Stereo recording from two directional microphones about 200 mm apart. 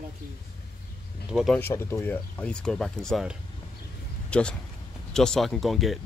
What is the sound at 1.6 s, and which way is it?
Speech, 10° left (ahead or behind).